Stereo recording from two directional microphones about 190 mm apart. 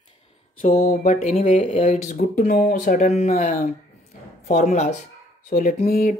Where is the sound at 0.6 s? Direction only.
35° left (ahead or behind).